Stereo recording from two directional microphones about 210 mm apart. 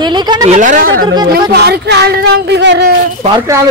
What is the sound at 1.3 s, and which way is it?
Speech, 50° right (ahead or behind).